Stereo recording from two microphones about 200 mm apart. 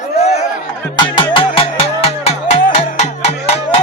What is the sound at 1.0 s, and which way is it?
Music, 25° left (ahead or behind).